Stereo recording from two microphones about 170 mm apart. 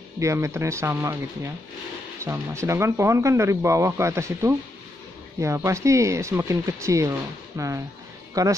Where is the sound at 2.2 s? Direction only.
15° right (ahead or behind).